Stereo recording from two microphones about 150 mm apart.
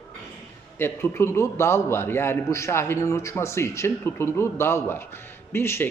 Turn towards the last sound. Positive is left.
turn(degrees=15)  # may be behind; listen again after turning